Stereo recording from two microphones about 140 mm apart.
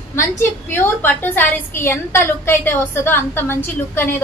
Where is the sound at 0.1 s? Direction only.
20° left (ahead or behind).